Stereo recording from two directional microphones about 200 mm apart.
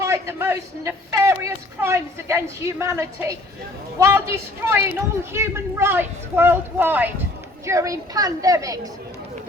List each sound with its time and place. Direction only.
0.0 s speech: 15° right (ahead or behind)